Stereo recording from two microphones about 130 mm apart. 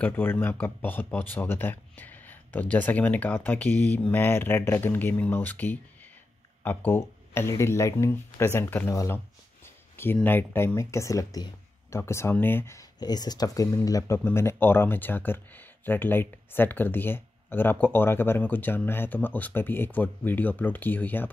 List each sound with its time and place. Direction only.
0.0 s speech: 15° left (ahead or behind)
10.2 s speech: 15° left (ahead or behind)
13.0 s speech: 30° left (ahead or behind); by 21.3 s 15° left (ahead or behind)